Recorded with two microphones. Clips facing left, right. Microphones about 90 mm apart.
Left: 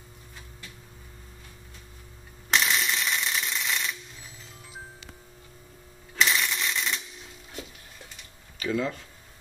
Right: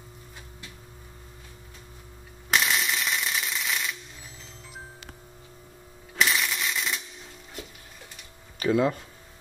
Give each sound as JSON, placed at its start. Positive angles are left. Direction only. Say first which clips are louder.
{"t": 2.5, "sound": "a sound", "louder": "even", "side_deg": -5}
{"t": 6.1, "sound": "shuffling cards", "louder": "even", "side_deg": -5}
{"t": 8.5, "sound": "speech", "louder": "right 5 dB", "side_deg": -40}